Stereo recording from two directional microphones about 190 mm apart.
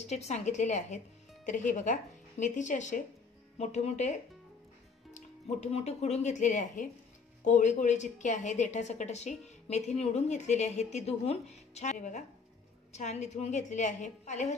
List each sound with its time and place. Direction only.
0.0 s a woman's voice: 35° left (ahead or behind)
5.1 s a woman's voice: 35° left (ahead or behind)